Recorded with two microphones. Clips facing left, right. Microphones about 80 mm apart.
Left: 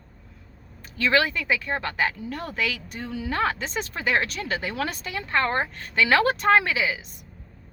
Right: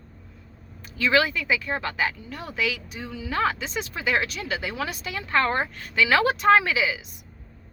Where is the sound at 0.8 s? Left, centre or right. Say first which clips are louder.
Even; left.